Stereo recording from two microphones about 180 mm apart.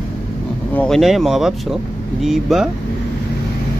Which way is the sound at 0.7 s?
5° left (ahead or behind).